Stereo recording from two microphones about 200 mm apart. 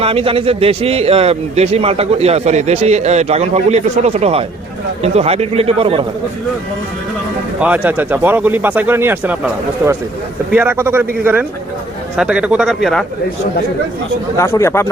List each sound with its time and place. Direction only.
0.0 s a man's voice: 25° right (ahead or behind)
7.6 s a man's voice: 10° right (ahead or behind)
14.3 s speech: 15° left (ahead or behind)